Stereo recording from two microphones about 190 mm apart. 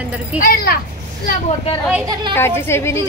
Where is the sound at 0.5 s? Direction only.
50° left (ahead or behind).